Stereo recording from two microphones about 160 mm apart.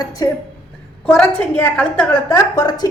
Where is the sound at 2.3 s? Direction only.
25° left (ahead or behind).